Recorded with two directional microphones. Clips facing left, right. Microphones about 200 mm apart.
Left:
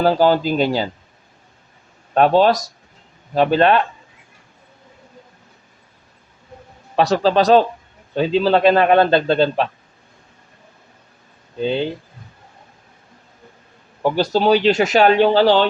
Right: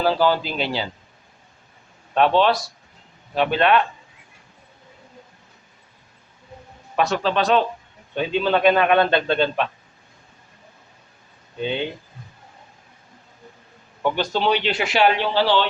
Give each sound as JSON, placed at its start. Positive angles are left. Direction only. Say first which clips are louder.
{"t": 0.0, "sound": "speech", "louder": "left 4 dB", "side_deg": 45}
{"t": 2.1, "sound": "speech", "louder": "left 4 dB", "side_deg": 40}
{"t": 6.9, "sound": "speech", "louder": "left 6 dB", "side_deg": 35}
{"t": 11.6, "sound": "speech", "louder": "left 5 dB", "side_deg": 35}
{"t": 14.0, "sound": "speech", "louder": "left 5 dB", "side_deg": 40}